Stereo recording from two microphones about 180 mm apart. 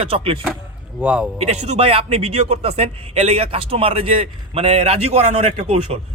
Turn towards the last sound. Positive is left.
turn(degrees=-35)  # may be behind; listen again after turning